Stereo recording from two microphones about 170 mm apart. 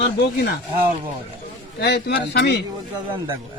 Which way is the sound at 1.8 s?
75° left (ahead or behind).